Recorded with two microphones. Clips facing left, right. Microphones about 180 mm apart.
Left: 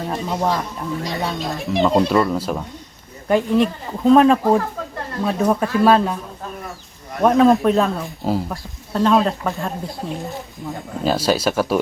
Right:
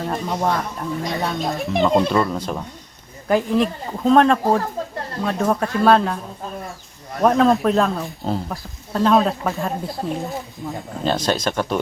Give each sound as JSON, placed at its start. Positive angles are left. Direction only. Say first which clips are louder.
{"t": 0.1, "sound": "speech", "louder": "left 1 dB", "side_deg": 0}
{"t": 7.2, "sound": "speech", "louder": "left 2 dB", "side_deg": 0}